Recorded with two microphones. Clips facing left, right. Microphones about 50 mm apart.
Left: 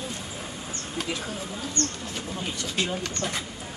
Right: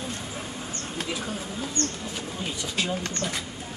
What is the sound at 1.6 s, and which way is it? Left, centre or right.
Speech, centre.